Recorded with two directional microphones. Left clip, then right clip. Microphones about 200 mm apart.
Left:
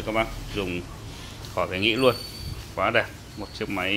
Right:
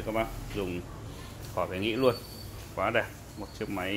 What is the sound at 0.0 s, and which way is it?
Speech, 5° left (ahead or behind).